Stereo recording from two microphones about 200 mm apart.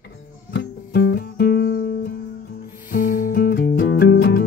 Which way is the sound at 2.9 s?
45° left (ahead or behind).